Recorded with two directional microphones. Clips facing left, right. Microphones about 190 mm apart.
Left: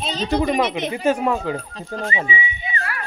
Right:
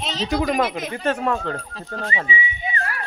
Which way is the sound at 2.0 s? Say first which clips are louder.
Left 2 dB; 25° left (ahead or behind).